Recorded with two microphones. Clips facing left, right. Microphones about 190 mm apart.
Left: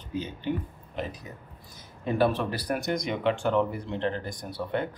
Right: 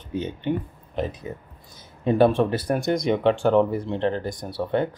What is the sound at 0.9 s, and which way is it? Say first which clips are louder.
Speech: right 7 dB; 25° right (ahead or behind).